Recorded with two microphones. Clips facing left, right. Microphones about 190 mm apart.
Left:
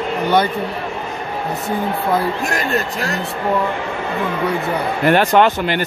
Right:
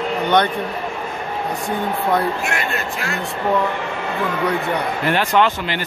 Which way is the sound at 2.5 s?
40° left (ahead or behind).